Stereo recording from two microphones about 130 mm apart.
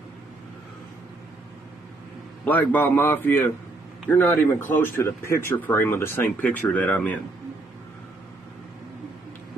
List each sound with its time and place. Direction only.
2.4 s speech: 10° left (ahead or behind)